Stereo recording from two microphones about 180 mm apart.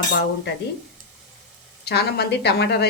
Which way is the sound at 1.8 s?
65° left (ahead or behind).